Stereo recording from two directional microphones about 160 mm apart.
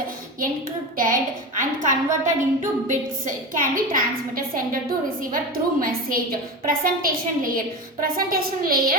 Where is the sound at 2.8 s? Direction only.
55° right (ahead or behind).